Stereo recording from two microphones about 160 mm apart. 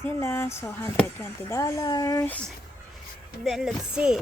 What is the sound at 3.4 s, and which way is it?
Speech, centre (ahead or behind).